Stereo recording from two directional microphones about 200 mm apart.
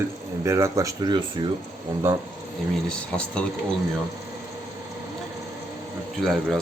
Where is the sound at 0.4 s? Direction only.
15° right (ahead or behind).